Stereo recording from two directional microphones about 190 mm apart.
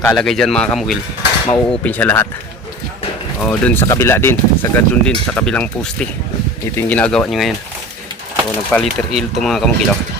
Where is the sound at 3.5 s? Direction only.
10° left (ahead or behind).